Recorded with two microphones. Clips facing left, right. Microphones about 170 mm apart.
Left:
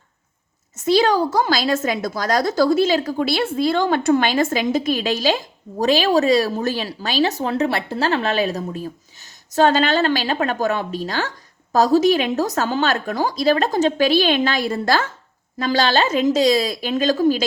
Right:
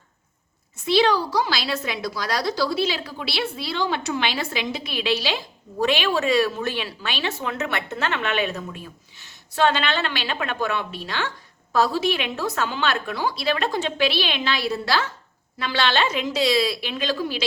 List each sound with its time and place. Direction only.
0.9 s a woman's voice: 45° left (ahead or behind)